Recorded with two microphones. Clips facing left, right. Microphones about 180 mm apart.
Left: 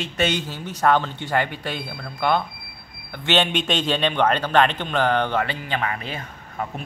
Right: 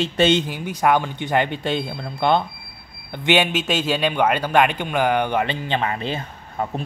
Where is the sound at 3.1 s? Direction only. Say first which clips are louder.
Right 3 dB; 10° right (ahead or behind); by 6.7 s 25° right (ahead or behind).